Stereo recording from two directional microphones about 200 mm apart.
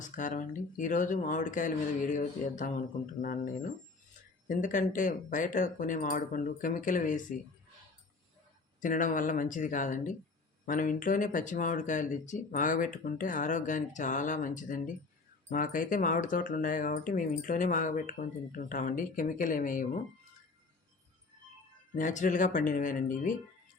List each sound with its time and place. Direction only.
0.0 s speech: 40° left (ahead or behind)
8.8 s speech: 40° left (ahead or behind)
21.9 s speech: 40° left (ahead or behind)